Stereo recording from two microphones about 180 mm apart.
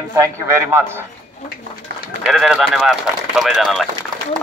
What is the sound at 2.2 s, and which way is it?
Speech, centre (ahead or behind).